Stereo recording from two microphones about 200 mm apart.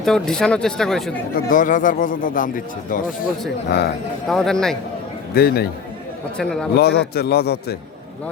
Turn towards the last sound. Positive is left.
turn(degrees=50)  # may be behind; listen again after turning